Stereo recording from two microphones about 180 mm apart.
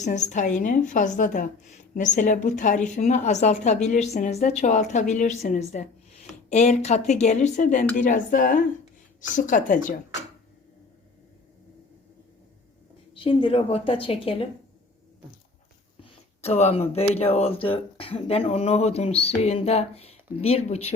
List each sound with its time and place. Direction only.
0.0 s a woman's voice: 40° left (ahead or behind)
13.1 s speech: 30° left (ahead or behind)
16.0 s speech: 35° left (ahead or behind)